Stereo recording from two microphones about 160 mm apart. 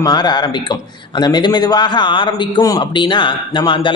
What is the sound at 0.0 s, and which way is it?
A man's voice, 25° left (ahead or behind).